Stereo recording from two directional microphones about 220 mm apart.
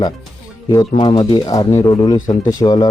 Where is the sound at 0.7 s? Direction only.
20° left (ahead or behind).